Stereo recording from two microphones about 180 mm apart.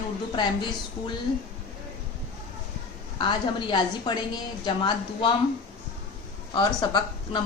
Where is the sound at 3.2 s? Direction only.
25° left (ahead or behind).